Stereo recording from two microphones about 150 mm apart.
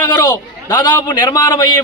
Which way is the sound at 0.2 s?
25° left (ahead or behind).